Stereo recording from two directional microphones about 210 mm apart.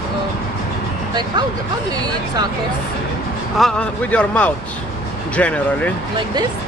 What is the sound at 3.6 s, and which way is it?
Speech, 5° left (ahead or behind).